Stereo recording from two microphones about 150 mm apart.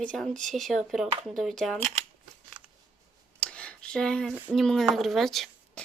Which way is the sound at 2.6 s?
30° right (ahead or behind).